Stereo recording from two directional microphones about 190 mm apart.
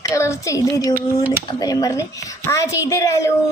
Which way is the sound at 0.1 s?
15° left (ahead or behind).